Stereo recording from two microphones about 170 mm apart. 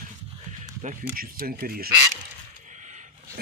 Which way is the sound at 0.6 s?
40° right (ahead or behind).